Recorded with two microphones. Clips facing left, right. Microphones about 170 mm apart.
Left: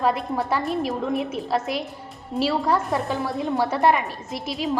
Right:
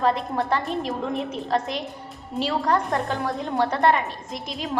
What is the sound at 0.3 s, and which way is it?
A woman's voice, 5° left (ahead or behind).